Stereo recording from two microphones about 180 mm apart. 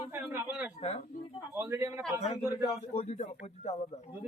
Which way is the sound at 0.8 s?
35° left (ahead or behind).